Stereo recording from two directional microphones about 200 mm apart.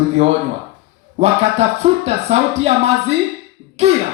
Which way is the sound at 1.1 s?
30° right (ahead or behind).